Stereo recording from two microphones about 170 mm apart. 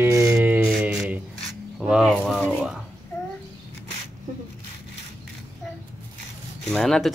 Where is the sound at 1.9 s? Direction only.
Centre (ahead or behind).